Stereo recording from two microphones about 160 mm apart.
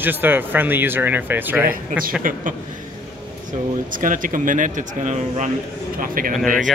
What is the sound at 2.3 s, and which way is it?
Speech, 60° right (ahead or behind).